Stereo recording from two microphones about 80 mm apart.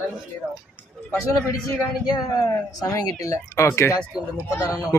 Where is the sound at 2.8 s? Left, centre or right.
Left.